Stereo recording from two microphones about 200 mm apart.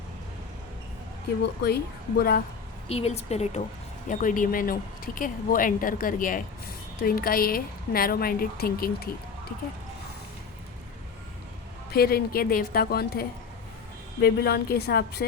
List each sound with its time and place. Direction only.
1.6 s speech: 50° left (ahead or behind)
2.9 s a woman's voice: 30° left (ahead or behind); by 8.9 s 50° left (ahead or behind)
11.9 s speech: 50° left (ahead or behind)